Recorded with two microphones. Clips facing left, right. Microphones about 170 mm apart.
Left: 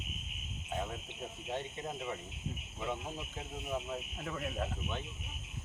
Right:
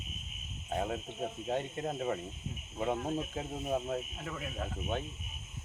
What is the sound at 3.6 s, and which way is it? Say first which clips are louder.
Speech: right 4 dB; 45° right (ahead or behind).